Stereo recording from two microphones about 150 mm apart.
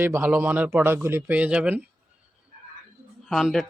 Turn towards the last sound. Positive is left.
turn(degrees=0)  # may be behind; listen again after turning